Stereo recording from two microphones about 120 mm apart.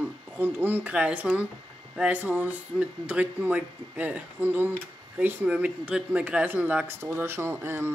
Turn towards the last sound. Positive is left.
turn(degrees=-20)  # may be behind; listen again after turning